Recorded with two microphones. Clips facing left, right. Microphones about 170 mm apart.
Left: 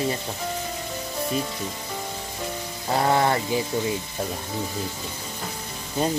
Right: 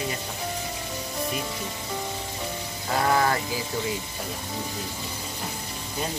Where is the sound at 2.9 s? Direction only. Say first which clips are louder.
Left 2 dB; 25° left (ahead or behind).